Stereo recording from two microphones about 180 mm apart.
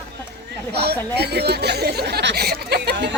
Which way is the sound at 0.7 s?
65° right (ahead or behind).